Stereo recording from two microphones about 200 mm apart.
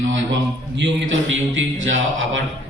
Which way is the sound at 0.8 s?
70° right (ahead or behind).